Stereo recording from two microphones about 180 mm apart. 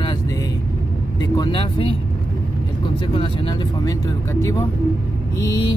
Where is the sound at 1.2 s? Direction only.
20° left (ahead or behind).